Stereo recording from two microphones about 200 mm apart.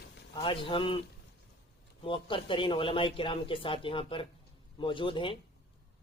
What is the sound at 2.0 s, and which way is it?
Speech, 25° left (ahead or behind).